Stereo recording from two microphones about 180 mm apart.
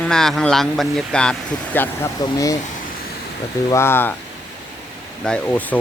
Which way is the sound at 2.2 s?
20° left (ahead or behind).